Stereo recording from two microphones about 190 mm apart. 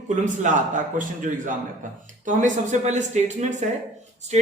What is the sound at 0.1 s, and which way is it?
A man's voice, 40° right (ahead or behind).